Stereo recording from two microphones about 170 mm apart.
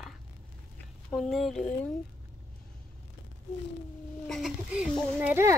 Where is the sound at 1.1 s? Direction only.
Centre (ahead or behind).